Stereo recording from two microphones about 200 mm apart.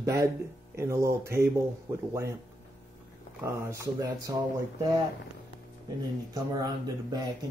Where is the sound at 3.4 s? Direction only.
15° right (ahead or behind).